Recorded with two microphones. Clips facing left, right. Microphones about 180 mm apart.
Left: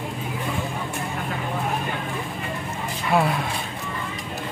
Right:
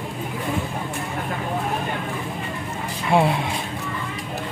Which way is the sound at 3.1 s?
25° right (ahead or behind).